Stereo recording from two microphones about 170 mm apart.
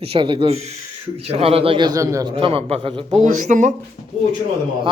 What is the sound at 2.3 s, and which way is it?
A man's voice, 35° right (ahead or behind).